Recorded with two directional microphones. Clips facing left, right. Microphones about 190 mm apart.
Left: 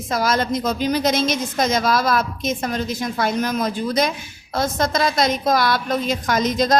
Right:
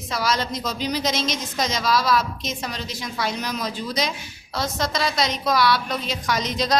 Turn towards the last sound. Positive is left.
turn(degrees=50)  # may be behind; listen again after turning